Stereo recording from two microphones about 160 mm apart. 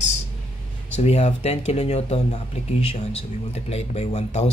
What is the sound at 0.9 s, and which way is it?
Speech, 45° left (ahead or behind).